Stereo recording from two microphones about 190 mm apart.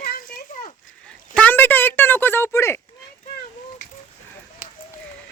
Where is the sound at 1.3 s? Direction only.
10° left (ahead or behind).